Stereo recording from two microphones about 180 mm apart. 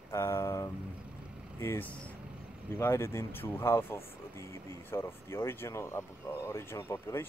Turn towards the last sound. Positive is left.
turn(degrees=15)  # may be behind; listen again after turning